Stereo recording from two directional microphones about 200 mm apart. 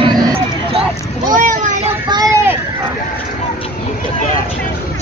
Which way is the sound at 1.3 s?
40° right (ahead or behind).